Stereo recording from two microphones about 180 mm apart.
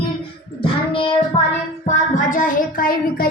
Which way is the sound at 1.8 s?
45° left (ahead or behind).